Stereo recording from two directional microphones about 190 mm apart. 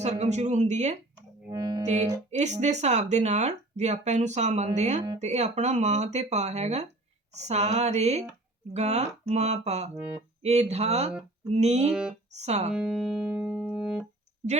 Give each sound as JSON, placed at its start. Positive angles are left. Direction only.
{"t": 0.0, "sound": "speech", "side_deg": -35}
{"t": 1.5, "sound": "speech", "side_deg": -20}
{"t": 1.8, "sound": "music", "side_deg": -35}
{"t": 2.3, "sound": "speech", "side_deg": -40}
{"t": 11.9, "sound": "speech", "side_deg": -5}
{"t": 12.4, "sound": "speech", "side_deg": -35}
{"t": 12.7, "sound": "music", "side_deg": -5}